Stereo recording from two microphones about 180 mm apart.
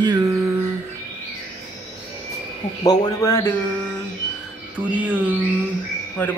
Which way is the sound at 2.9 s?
15° left (ahead or behind).